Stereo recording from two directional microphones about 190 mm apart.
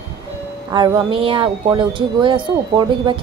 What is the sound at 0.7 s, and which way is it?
Speech, 15° right (ahead or behind).